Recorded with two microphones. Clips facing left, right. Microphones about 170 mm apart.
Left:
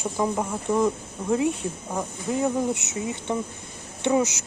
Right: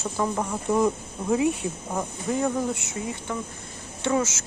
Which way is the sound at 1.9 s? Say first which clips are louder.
Even; centre (ahead or behind).